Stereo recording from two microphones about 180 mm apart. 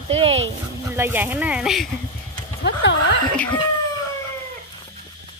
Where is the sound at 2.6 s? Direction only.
75° left (ahead or behind).